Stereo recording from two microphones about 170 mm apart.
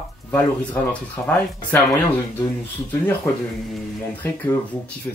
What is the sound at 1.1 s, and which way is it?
Speech, 10° left (ahead or behind).